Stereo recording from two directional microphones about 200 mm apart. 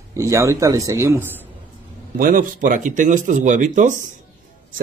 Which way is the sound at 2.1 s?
45° right (ahead or behind).